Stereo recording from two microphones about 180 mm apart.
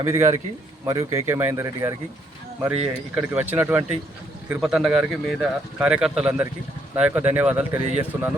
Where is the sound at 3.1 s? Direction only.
10° right (ahead or behind).